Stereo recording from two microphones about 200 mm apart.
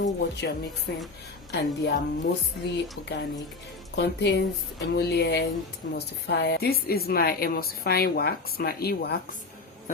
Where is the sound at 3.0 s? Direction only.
55° left (ahead or behind).